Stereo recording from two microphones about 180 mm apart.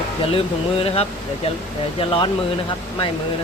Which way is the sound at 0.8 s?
35° left (ahead or behind).